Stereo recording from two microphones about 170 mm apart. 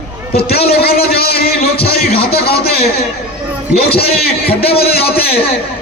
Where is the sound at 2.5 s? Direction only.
65° left (ahead or behind).